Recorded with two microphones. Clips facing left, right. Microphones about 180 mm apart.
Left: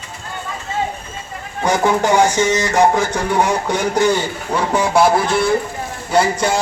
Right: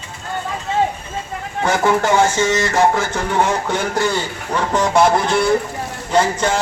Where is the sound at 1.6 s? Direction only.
15° left (ahead or behind).